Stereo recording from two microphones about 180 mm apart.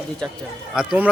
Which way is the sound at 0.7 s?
5° right (ahead or behind).